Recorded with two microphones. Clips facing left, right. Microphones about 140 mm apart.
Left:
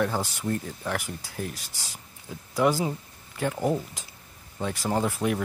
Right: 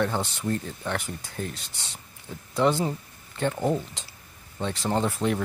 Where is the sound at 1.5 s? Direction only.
25° right (ahead or behind).